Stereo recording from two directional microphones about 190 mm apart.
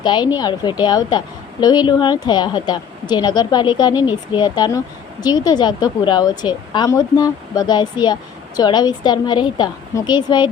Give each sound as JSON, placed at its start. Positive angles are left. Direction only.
{"t": 0.0, "sound": "a woman's voice", "side_deg": 25}